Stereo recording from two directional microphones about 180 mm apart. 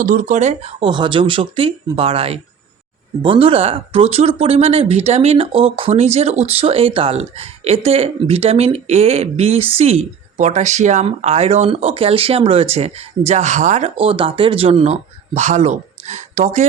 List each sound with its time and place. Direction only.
0.0 s speech: 45° right (ahead or behind)